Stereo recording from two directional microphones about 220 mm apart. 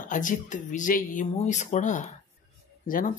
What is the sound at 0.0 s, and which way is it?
Speech, 35° left (ahead or behind).